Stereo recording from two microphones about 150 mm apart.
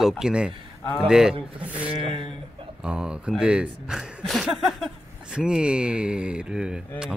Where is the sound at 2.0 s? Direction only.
35° right (ahead or behind).